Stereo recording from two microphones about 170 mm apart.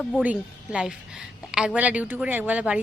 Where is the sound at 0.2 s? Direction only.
5° right (ahead or behind).